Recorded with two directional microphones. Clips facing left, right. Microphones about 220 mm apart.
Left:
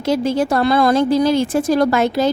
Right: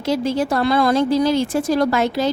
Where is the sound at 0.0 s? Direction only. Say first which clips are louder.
Left 2 dB; 50° left (ahead or behind).